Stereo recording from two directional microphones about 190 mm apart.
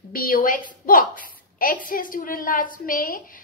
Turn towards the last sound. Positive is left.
turn(degrees=45)  # may be behind; listen again after turning